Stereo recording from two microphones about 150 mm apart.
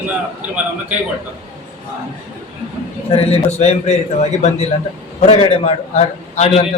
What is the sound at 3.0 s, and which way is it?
Speech, 40° left (ahead or behind).